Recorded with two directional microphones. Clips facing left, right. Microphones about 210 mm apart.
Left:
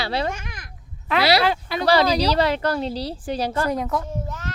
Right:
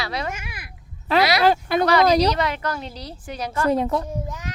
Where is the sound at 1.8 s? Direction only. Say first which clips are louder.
Even; 30° left (ahead or behind).